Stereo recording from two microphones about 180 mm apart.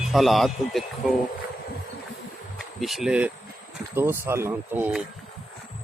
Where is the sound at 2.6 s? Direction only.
Centre (ahead or behind).